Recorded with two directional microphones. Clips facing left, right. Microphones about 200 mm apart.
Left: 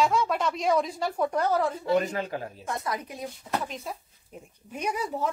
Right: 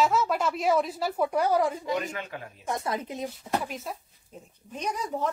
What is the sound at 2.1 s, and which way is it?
Speech, 35° left (ahead or behind).